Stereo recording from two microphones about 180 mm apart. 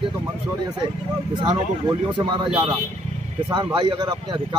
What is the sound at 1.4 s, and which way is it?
Speech, 25° right (ahead or behind).